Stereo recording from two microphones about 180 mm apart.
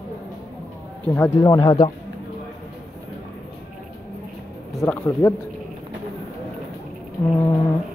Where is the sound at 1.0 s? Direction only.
10° left (ahead or behind).